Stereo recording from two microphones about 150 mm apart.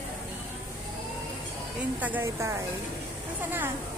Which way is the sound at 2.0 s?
15° right (ahead or behind).